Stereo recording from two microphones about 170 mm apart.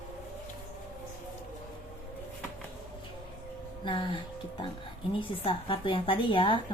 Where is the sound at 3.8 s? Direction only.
30° left (ahead or behind).